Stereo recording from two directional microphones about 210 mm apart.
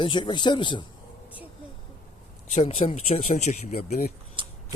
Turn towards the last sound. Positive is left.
turn(degrees=-25)  # may be behind; listen again after turning